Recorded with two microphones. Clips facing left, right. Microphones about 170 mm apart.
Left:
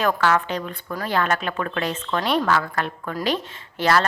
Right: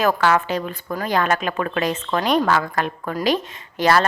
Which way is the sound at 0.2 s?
15° right (ahead or behind).